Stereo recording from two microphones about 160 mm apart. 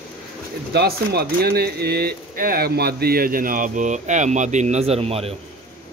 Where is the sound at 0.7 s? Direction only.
85° right; by 5.3 s 40° right (ahead or behind).